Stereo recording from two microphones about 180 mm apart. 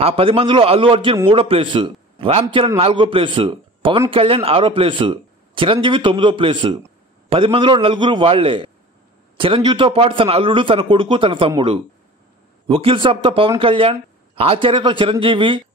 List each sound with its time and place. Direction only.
0.0 s a man's voice: 30° right (ahead or behind)